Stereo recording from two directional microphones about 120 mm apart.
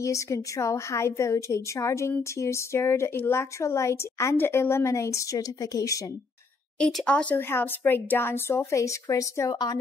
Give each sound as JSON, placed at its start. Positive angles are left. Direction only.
{"t": 0.0, "sound": "a woman's voice", "side_deg": 25}
{"t": 6.8, "sound": "speech", "side_deg": 5}
{"t": 9.5, "sound": "a woman's voice", "side_deg": 35}